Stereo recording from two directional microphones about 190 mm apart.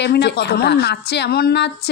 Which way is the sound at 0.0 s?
60° left (ahead or behind).